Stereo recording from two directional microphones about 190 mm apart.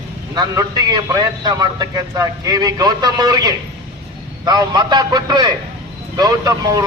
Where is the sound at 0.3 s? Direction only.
20° right (ahead or behind).